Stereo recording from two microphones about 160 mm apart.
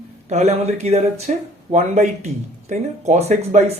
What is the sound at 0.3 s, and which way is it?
Speech, 45° right (ahead or behind).